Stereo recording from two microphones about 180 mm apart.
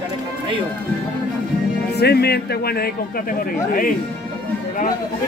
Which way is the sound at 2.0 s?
65° left (ahead or behind).